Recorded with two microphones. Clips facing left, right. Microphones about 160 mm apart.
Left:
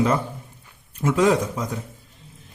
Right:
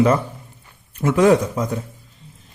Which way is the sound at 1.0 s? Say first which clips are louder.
Right 4 dB; 60° right (ahead or behind).